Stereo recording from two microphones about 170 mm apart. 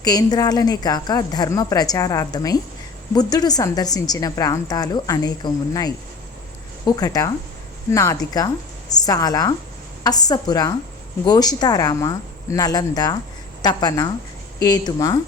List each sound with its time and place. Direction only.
0.0 s a woman's voice: 25° left (ahead or behind)